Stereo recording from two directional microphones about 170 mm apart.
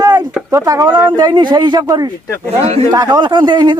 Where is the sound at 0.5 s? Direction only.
20° right (ahead or behind).